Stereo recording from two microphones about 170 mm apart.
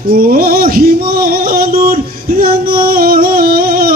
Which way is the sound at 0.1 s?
55° right (ahead or behind).